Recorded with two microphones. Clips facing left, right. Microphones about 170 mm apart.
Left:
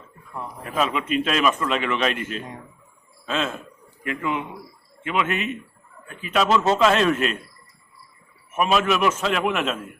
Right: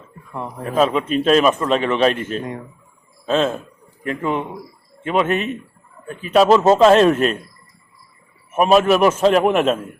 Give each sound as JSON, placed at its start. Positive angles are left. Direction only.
{"t": 0.8, "sound": "speech", "side_deg": -35}
{"t": 8.5, "sound": "a man's voice", "side_deg": -40}